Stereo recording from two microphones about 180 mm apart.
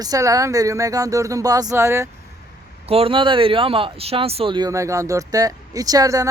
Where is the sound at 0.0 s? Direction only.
20° right (ahead or behind).